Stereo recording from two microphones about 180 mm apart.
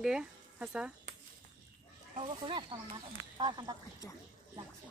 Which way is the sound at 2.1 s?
30° right (ahead or behind).